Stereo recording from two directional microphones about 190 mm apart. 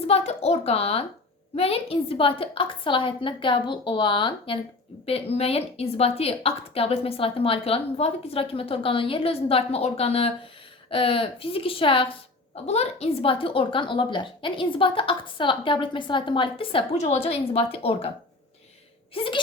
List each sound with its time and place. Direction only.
0.1 s a woman's voice: 35° left (ahead or behind)
19.1 s a woman's voice: 30° left (ahead or behind)